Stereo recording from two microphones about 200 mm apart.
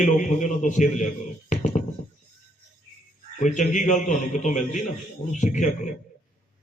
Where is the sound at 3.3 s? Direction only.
40° left (ahead or behind).